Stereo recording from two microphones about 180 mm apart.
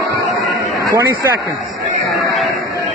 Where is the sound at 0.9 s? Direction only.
20° right (ahead or behind).